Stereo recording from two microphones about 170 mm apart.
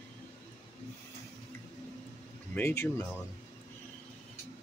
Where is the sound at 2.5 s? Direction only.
15° left (ahead or behind).